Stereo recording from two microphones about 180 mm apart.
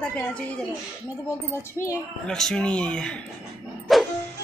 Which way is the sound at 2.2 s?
5° left (ahead or behind).